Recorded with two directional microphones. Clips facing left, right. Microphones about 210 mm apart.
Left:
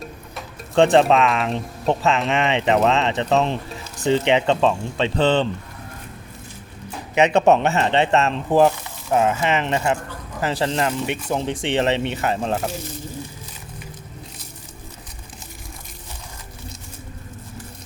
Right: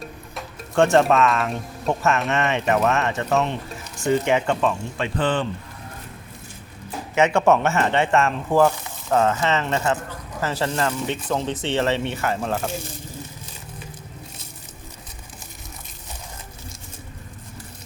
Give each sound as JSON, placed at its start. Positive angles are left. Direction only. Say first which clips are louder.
{"t": 0.8, "sound": "speech", "louder": "left 2 dB", "side_deg": 20}
{"t": 4.0, "sound": "speech", "louder": "left 2 dB", "side_deg": 20}
{"t": 7.2, "sound": "speech", "louder": "left 2 dB", "side_deg": 20}